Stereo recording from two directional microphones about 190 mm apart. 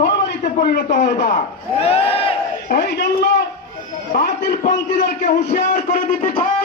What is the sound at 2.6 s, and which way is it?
Speech, 55° left (ahead or behind).